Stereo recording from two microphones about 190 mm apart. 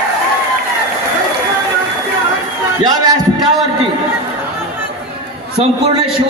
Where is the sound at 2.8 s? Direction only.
20° right (ahead or behind).